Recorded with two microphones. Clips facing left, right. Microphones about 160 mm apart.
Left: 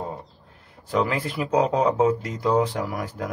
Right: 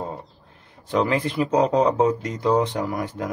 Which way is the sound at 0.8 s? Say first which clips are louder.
Right 2 dB; 5° left (ahead or behind).